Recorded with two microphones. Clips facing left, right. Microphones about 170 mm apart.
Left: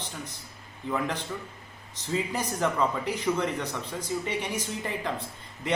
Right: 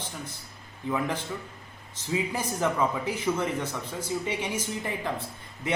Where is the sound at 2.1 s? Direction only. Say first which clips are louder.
Even; 10° right (ahead or behind).